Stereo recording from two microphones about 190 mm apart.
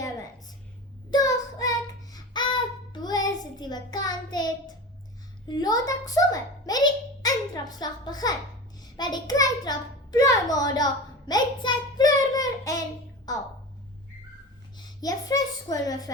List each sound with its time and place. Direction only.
1.1 s child singing: 20° left (ahead or behind)
5.5 s a child's voice: 20° left (ahead or behind)
11.3 s child singing: 20° left (ahead or behind)
13.3 s a child's voice: 20° left (ahead or behind)
14.8 s a child's voice: 20° left (ahead or behind)